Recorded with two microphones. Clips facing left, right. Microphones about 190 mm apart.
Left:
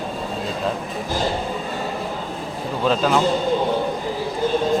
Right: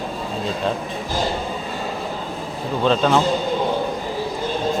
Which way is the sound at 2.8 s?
5° left (ahead or behind).